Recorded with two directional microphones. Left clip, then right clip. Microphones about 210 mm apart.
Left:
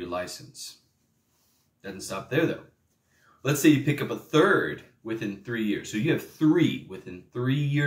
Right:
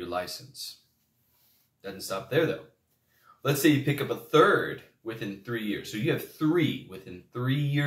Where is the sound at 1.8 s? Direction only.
5° left (ahead or behind).